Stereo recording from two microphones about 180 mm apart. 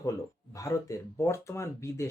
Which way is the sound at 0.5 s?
20° left (ahead or behind).